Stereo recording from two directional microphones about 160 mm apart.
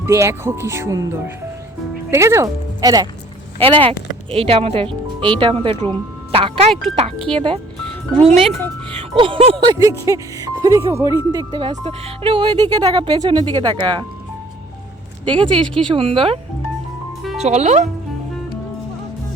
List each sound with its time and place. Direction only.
0.0 s speech: 15° right (ahead or behind)
2.0 s speech: 15° right (ahead or behind)
3.6 s speech: 35° right (ahead or behind)
11.7 s speech: 40° right (ahead or behind)
15.2 s speech: 30° right (ahead or behind); by 17.8 s 45° right (ahead or behind)